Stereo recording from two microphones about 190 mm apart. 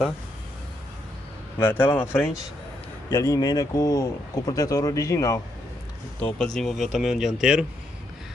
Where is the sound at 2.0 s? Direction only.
10° left (ahead or behind).